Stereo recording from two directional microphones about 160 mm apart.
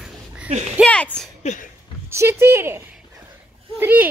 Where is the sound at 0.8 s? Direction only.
5° left (ahead or behind).